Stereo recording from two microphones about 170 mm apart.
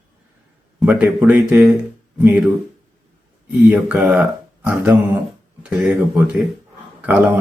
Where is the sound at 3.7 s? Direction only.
10° right (ahead or behind).